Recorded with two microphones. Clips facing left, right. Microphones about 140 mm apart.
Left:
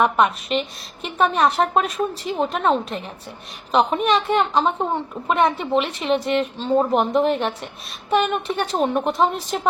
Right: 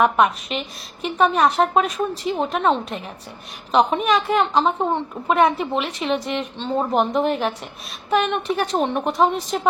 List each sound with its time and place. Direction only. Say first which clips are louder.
0.0 s a woman's voice: right 1 dB; centre (ahead or behind)